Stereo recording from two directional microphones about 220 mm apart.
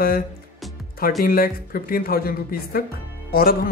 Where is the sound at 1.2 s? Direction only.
40° left (ahead or behind).